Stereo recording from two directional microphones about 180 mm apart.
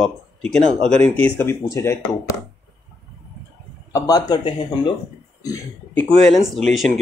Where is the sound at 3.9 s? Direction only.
20° left (ahead or behind).